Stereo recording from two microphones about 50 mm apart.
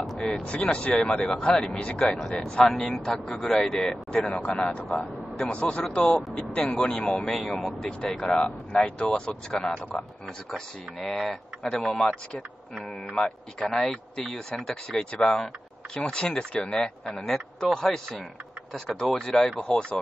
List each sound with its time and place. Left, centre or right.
0.7 s a man's voice: left
2.6 s speech: centre
2.9 s a man's voice: centre
4.9 s a man's voice: centre
7.2 s a man's voice: centre
10.5 s speech: centre
13.1 s speech: centre